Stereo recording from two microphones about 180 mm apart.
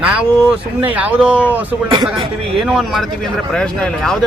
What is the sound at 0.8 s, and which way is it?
Speech, 10° right (ahead or behind).